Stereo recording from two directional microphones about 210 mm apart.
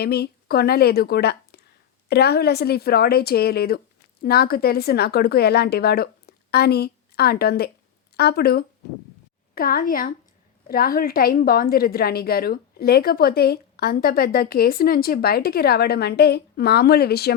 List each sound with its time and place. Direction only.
0.0 s a woman's voice: 50° left (ahead or behind)